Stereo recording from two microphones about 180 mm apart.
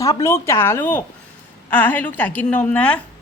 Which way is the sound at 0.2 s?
15° left (ahead or behind).